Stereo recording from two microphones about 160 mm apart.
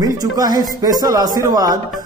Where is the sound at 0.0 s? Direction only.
25° right (ahead or behind).